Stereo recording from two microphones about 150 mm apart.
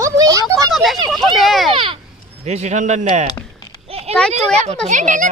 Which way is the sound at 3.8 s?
40° right (ahead or behind).